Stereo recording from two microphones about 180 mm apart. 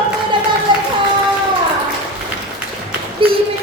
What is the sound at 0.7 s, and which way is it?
Music, 25° right (ahead or behind).